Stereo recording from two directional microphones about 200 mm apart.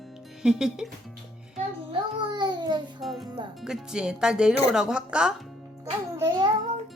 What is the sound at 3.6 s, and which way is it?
Speech, 5° right (ahead or behind).